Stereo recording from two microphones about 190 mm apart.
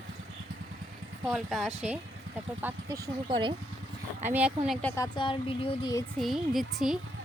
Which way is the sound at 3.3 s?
25° right (ahead or behind).